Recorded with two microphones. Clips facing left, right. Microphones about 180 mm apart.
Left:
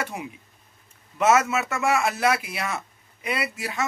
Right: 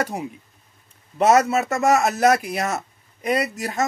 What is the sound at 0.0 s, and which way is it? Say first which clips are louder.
A man's voice: right 6 dB; 35° right (ahead or behind).